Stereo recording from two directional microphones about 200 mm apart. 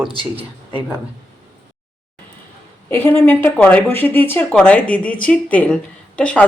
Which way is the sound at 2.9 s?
10° left (ahead or behind).